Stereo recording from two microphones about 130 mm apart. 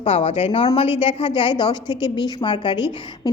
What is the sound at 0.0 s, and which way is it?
A woman's voice, 45° left (ahead or behind).